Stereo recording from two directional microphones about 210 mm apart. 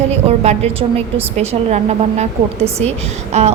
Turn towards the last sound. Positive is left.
turn(degrees=-30)  # may be behind; listen again after turning